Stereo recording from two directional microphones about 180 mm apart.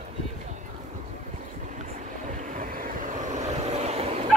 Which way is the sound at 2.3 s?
45° right (ahead or behind).